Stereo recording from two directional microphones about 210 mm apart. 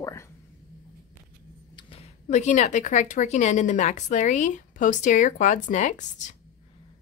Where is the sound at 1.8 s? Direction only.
25° left (ahead or behind).